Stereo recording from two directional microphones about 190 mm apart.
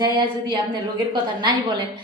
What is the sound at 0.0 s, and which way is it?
A woman's voice, 25° right (ahead or behind).